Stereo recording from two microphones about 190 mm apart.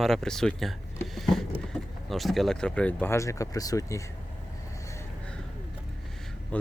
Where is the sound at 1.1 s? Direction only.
Centre (ahead or behind).